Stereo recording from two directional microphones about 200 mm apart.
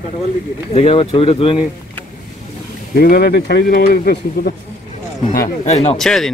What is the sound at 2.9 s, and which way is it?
Speech, 50° left (ahead or behind).